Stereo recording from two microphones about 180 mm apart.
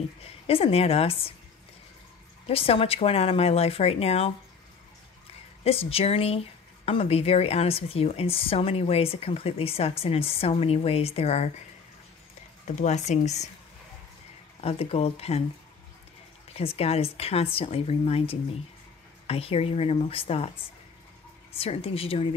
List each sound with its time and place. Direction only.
0.2 s speech: 35° left (ahead or behind)
2.4 s speech: 35° left (ahead or behind)
5.6 s speech: 35° left (ahead or behind)
12.6 s speech: 40° left (ahead or behind)
14.6 s speech: 35° left (ahead or behind)
16.5 s speech: 35° left (ahead or behind)
21.5 s speech: 35° left (ahead or behind)